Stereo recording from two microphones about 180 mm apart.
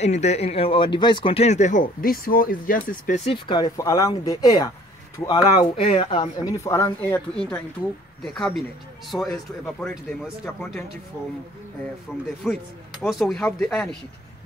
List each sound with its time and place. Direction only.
0.0 s speech: 40° left (ahead or behind)
3.3 s speech: 25° left (ahead or behind)
6.5 s speech: 15° left (ahead or behind)
12.4 s speech: centre (ahead or behind)